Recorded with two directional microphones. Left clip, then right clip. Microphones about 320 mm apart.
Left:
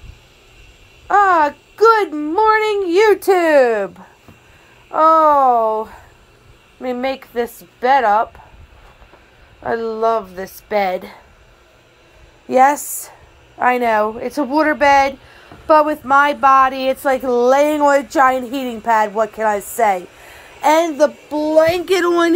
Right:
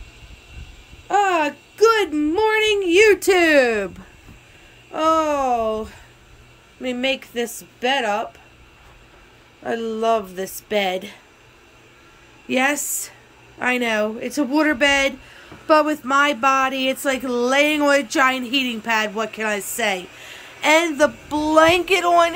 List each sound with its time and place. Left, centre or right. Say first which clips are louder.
1.0 s a sound: left 6 dB; centre
3.1 s speech: left 2 dB; centre
4.9 s speech: left 8 dB; centre
6.9 s speech: left 2 dB; centre
9.8 s speech: left 2 dB; centre
12.5 s speech: left 8 dB; centre
14.8 s speech: left 5 dB; centre
21.8 s speech: left 1 dB; centre